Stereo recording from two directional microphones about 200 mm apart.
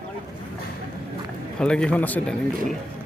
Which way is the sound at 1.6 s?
5° left (ahead or behind).